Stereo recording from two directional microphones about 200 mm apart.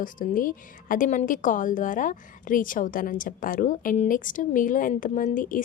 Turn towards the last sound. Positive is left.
turn(degrees=40)  # may be behind; listen again after turning